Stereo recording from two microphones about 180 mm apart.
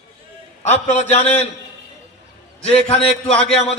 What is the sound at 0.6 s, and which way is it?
Speech, 40° left (ahead or behind).